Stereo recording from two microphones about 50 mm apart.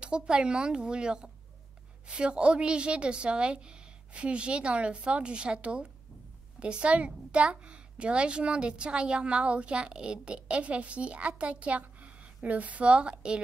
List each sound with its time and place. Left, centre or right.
0.0 s a woman's voice: centre